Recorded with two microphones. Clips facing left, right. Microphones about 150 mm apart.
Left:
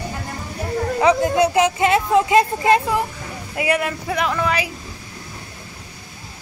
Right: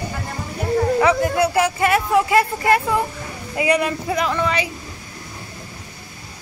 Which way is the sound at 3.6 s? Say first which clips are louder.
Right 2 dB; 5° left (ahead or behind).